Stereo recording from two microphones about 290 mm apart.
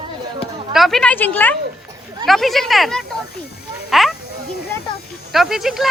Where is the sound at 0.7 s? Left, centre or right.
Centre.